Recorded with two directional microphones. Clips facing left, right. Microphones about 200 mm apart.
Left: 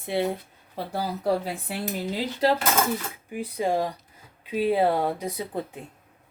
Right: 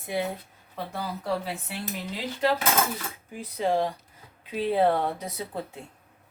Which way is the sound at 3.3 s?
15° left (ahead or behind).